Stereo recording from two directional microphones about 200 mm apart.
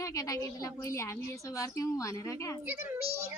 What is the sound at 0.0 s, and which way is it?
A woman's voice, 15° left (ahead or behind).